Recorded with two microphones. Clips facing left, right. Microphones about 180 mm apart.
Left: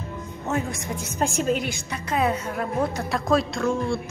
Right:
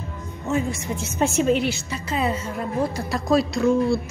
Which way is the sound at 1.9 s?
60° left (ahead or behind).